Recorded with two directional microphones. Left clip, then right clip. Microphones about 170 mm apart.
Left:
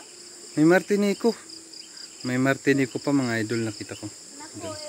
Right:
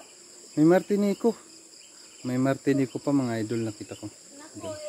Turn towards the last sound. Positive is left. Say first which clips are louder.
# left 2 dB
turn(degrees=-5)  # may be behind; listen again after turning